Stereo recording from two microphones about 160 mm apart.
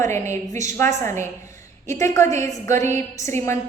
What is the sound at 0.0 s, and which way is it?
A woman's voice, 15° left (ahead or behind).